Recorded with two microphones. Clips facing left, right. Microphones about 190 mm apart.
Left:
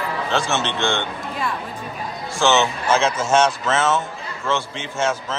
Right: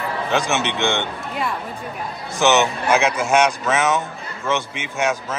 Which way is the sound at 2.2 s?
20° right (ahead or behind).